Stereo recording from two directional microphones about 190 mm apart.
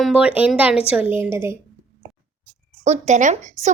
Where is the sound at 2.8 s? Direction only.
40° right (ahead or behind).